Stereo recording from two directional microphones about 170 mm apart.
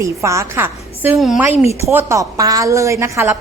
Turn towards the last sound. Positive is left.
turn(degrees=-15)  # may be behind; listen again after turning